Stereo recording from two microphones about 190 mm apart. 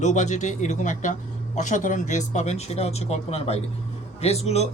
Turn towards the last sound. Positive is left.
turn(degrees=35)  # may be behind; listen again after turning